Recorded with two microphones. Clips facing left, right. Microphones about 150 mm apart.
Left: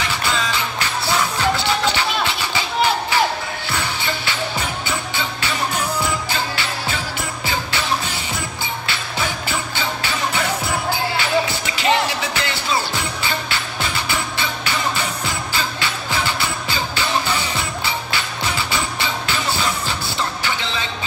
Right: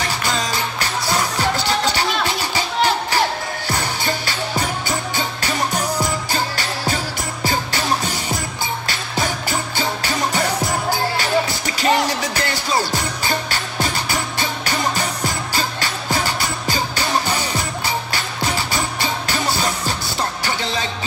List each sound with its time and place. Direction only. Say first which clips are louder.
0.0 s music: even; 40° right (ahead or behind)
1.9 s music: right 1 dB; 40° right (ahead or behind)
8.8 s music: right 1 dB; 40° right (ahead or behind)